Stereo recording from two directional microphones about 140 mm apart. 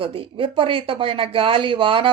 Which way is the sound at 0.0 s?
40° right (ahead or behind).